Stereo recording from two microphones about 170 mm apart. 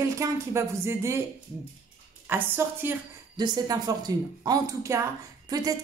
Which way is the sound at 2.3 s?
10° right (ahead or behind).